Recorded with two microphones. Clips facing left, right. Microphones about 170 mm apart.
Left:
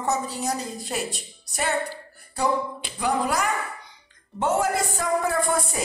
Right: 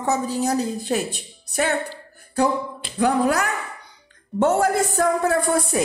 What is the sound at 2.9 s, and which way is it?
A woman's voice, 60° right (ahead or behind).